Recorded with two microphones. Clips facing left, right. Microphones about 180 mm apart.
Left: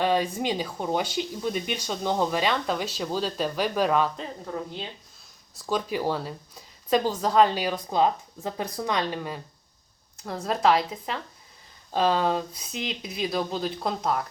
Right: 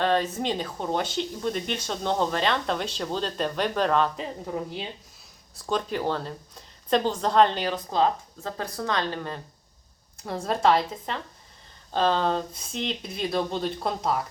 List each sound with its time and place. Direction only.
0.0 s speech: 10° left (ahead or behind)
4.2 s a woman's voice: 10° right (ahead or behind)
5.6 s speech: 5° left (ahead or behind)